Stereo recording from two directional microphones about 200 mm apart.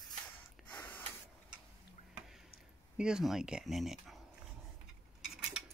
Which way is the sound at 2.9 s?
5° right (ahead or behind).